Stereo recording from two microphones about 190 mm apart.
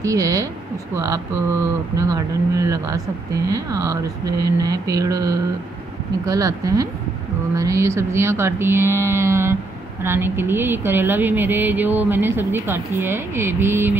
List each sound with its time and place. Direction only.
0.0 s a woman's voice: 15° right (ahead or behind)